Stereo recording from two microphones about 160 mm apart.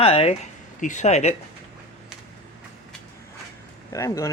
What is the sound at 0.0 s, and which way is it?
Speech, 40° left (ahead or behind).